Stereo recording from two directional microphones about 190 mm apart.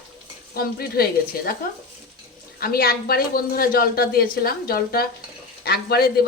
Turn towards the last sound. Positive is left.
turn(degrees=55)  # may be behind; listen again after turning